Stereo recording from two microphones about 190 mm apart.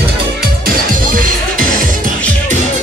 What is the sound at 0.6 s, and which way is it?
Music, 45° right (ahead or behind).